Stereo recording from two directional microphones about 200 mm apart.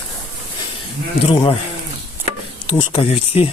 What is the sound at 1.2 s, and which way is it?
Speech, 25° left (ahead or behind).